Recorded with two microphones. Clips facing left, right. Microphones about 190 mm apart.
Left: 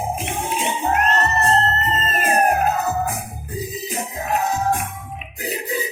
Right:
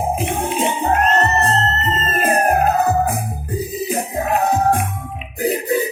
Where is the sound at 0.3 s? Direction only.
60° right (ahead or behind).